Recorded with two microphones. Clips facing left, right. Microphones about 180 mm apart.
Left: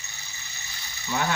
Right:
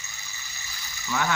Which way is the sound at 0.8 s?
25° left (ahead or behind).